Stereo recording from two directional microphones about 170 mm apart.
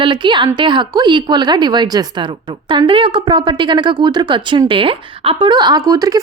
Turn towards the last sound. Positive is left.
turn(degrees=-20)  # may be behind; listen again after turning